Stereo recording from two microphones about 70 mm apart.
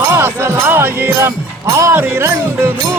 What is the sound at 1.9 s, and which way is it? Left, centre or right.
Music, right.